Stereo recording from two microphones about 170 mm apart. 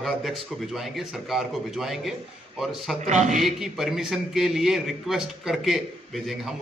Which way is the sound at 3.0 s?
45° right (ahead or behind).